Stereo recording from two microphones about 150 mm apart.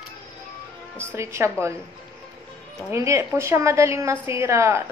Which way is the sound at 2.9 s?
20° right (ahead or behind).